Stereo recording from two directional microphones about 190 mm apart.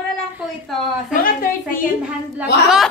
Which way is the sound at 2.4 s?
5° right (ahead or behind).